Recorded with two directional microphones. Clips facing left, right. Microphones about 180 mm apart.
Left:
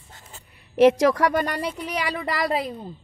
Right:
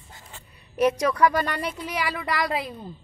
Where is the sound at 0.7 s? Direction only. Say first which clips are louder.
Left 5 dB; 90° left.